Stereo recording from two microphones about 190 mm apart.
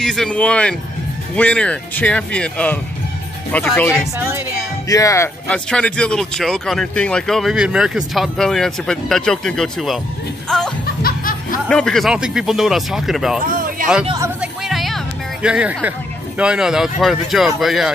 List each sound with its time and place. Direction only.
0.0 s speech: 5° left (ahead or behind)
3.9 s speech: 10° right (ahead or behind)
4.8 s speech: 15° left (ahead or behind)
11.0 s music: 50° left (ahead or behind)
11.6 s speech: 5° left (ahead or behind)
13.5 s a sound: 45° right (ahead or behind)
14.4 s music: centre (ahead or behind)
15.4 s speech: 5° right (ahead or behind)